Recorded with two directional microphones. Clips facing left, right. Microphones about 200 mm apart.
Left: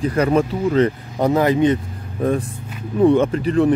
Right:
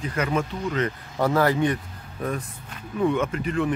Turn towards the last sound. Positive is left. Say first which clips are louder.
# left 9 dB
turn(degrees=35)  # may be behind; listen again after turning